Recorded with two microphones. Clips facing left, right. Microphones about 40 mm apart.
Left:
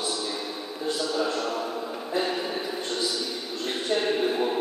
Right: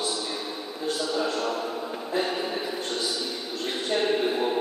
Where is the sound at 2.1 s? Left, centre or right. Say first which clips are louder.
Even; centre.